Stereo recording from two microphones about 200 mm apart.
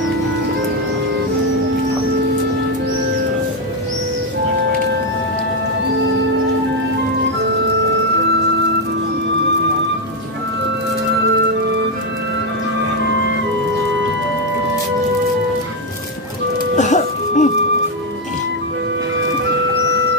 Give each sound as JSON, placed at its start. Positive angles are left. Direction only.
{"t": 16.7, "sound": "music", "side_deg": 35}